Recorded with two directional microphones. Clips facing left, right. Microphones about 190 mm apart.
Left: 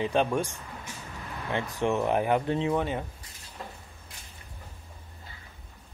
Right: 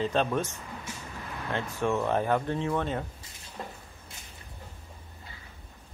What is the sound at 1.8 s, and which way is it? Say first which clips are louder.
Speech: left 1 dB; 15° left (ahead or behind).